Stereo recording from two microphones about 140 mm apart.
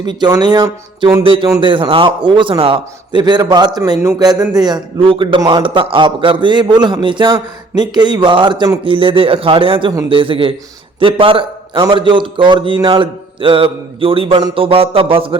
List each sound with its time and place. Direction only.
0.0 s a man's voice: 30° right (ahead or behind)
1.2 s a man's voice: 40° right (ahead or behind)
4.9 s a man's voice: 40° right (ahead or behind)